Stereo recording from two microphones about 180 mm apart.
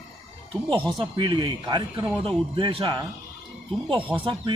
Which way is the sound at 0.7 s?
25° right (ahead or behind).